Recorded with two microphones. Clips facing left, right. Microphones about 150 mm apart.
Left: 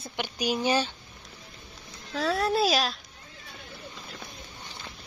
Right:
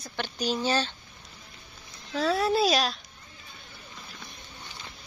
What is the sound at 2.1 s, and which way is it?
Speech, centre (ahead or behind).